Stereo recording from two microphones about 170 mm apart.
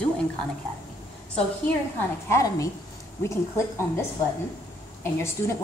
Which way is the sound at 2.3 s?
20° left (ahead or behind).